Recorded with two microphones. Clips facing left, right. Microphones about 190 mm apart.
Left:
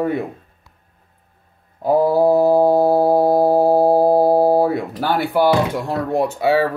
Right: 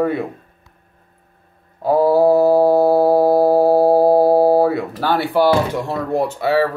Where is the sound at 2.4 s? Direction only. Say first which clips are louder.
Right 1 dB; 15° left (ahead or behind).